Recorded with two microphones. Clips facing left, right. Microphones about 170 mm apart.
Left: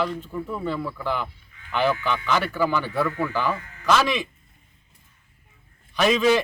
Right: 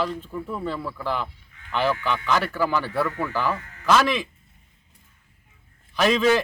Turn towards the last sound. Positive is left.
turn(degrees=0)  # may be behind; listen again after turning